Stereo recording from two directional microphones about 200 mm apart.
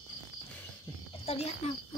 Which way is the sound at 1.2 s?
30° left (ahead or behind).